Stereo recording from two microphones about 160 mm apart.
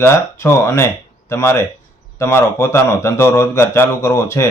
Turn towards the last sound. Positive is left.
turn(degrees=15)  # may be behind; listen again after turning